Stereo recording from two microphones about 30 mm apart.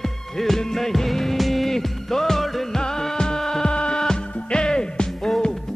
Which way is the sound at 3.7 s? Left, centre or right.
Left.